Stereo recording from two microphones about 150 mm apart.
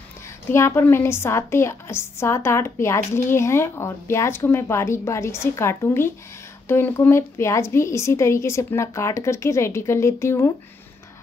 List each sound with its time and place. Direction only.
0.5 s a woman's voice: 15° left (ahead or behind)